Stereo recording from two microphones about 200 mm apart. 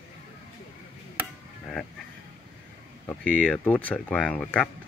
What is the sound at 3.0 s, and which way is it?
Speech, 5° left (ahead or behind).